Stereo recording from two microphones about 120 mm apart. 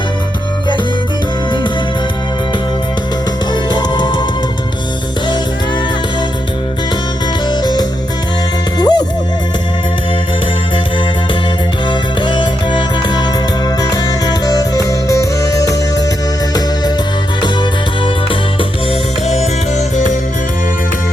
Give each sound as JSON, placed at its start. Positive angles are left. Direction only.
{"t": 3.5, "sound": "music", "side_deg": 35}
{"t": 7.6, "sound": "music", "side_deg": 35}
{"t": 11.9, "sound": "music", "side_deg": 40}
{"t": 17.4, "sound": "music", "side_deg": 40}